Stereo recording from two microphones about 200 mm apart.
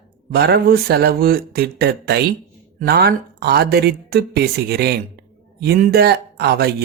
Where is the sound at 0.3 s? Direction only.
55° right (ahead or behind).